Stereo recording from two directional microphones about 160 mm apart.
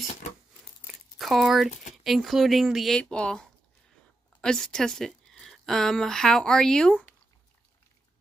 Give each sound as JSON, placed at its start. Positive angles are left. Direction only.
{"t": 0.8, "sound": "crumpling", "side_deg": 0}
{"t": 2.0, "sound": "speech", "side_deg": 0}